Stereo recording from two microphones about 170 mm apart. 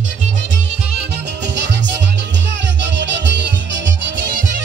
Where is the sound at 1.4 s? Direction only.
90° right.